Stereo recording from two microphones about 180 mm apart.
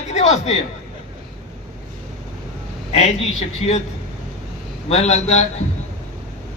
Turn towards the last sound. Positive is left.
turn(degrees=35)  # may be behind; listen again after turning